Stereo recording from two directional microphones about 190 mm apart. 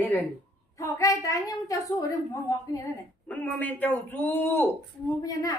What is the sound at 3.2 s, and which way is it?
A child's voice, 10° left (ahead or behind).